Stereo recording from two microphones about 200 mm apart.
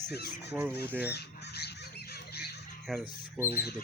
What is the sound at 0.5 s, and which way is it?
Fowl, 10° right (ahead or behind).